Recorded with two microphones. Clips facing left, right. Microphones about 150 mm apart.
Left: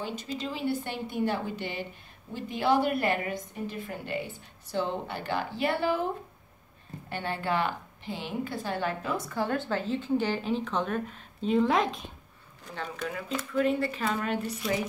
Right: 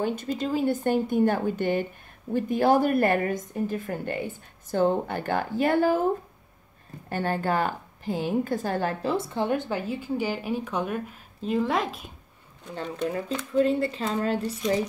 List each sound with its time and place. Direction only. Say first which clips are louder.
0.0 s a woman's voice: right 7 dB; 50° right (ahead or behind)
7.1 s a woman's voice: right 5 dB; 45° right (ahead or behind)
9.1 s speech: right 4 dB; 25° right (ahead or behind); by 12.0 s centre (ahead or behind)
13.5 s speech: right 4 dB; 30° right (ahead or behind)